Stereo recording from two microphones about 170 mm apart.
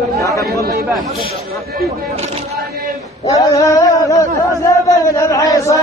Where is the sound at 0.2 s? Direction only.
20° left (ahead or behind).